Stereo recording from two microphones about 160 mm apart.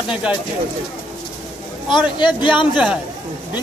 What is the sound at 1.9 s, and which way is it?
Speech, 30° left (ahead or behind).